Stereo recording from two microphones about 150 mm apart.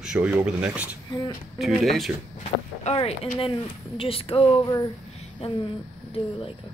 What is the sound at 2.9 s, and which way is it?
Speech, 40° left (ahead or behind).